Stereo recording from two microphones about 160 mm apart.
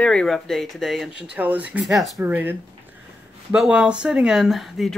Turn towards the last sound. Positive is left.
turn(degrees=0)  # may be behind; listen again after turning